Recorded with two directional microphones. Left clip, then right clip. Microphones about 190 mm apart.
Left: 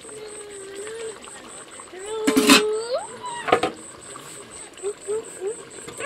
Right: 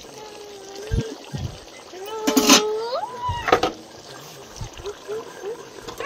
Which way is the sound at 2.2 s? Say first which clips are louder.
Even; 20° left (ahead or behind).